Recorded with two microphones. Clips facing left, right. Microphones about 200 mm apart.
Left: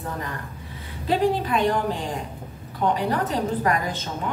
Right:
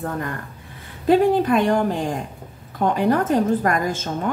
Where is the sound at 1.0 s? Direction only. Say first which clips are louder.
Right 6 dB; 50° right (ahead or behind).